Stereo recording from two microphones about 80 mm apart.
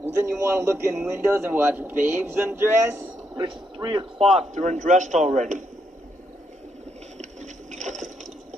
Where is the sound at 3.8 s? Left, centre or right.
Right.